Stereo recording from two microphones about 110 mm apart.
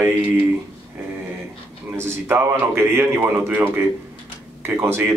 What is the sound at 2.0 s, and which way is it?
A man's voice, 20° right (ahead or behind).